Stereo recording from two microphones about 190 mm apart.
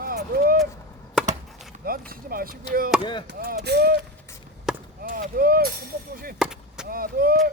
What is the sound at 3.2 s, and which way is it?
Chop, 55° right (ahead or behind).